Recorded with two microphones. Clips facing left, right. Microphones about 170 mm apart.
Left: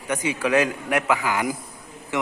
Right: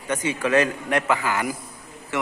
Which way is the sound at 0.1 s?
10° left (ahead or behind).